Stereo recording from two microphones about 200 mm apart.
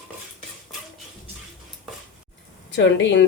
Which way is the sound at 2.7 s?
60° left (ahead or behind).